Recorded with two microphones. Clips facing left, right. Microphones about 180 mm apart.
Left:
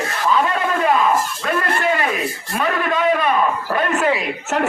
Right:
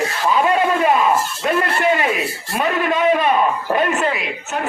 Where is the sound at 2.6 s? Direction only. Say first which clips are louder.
Right 2 dB; 20° right (ahead or behind).